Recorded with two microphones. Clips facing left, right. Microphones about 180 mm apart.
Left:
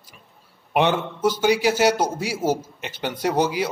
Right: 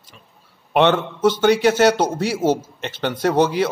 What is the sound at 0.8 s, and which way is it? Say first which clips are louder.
Speech: right 4 dB; 70° right (ahead or behind).